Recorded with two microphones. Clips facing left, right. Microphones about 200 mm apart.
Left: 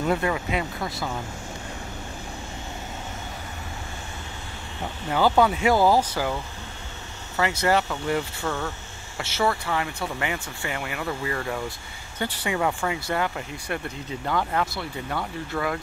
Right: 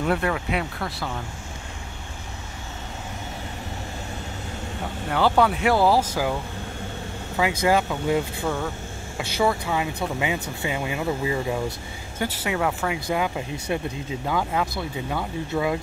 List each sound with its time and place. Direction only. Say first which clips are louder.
0.0 s speech: even; centre (ahead or behind)
5.1 s speech: even; centre (ahead or behind)
7.6 s speech: right 2 dB; 10° right (ahead or behind)